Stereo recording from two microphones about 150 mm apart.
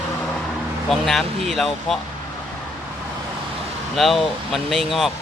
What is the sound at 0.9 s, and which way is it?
Speech, centre (ahead or behind).